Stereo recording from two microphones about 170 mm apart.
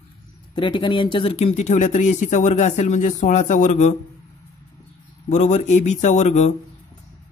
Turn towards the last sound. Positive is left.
turn(degrees=45)  # may be behind; listen again after turning